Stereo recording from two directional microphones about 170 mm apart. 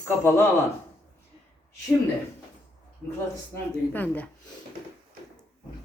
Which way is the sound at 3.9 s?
10° left (ahead or behind).